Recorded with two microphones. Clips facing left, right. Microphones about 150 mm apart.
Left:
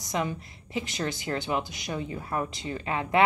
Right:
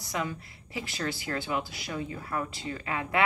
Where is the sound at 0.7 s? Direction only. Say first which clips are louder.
Left 3 dB; 20° left (ahead or behind).